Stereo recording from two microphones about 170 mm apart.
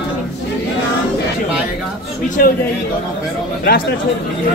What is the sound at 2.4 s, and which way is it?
Speech, 55° left (ahead or behind).